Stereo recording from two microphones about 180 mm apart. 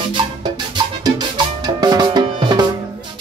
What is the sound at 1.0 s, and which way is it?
Music, 25° right (ahead or behind).